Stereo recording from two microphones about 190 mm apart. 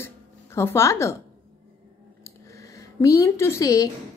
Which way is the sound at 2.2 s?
15° left (ahead or behind).